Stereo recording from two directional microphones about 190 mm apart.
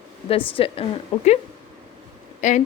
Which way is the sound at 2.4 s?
40° left (ahead or behind).